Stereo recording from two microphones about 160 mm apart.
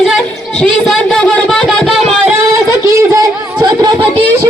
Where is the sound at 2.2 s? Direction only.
15° right (ahead or behind).